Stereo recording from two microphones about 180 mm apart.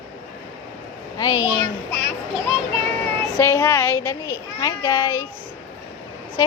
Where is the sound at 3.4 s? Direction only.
15° left (ahead or behind).